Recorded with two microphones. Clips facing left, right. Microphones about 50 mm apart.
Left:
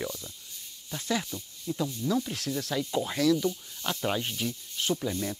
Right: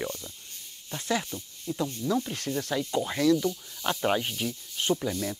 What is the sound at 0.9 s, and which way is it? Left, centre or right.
Speech, centre.